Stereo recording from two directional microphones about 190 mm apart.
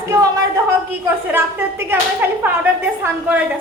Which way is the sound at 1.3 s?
10° right (ahead or behind).